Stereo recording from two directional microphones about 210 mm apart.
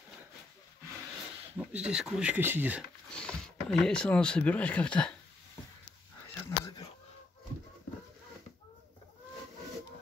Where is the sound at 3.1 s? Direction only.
5° left (ahead or behind).